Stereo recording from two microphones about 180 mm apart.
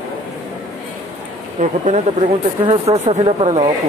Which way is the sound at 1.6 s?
45° right (ahead or behind).